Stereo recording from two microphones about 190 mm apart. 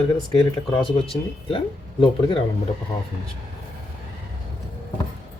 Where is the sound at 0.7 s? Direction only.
25° left (ahead or behind).